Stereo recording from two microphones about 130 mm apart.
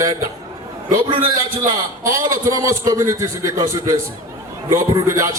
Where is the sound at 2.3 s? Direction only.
25° right (ahead or behind).